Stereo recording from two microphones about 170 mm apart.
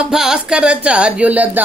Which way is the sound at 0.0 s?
5° right (ahead or behind).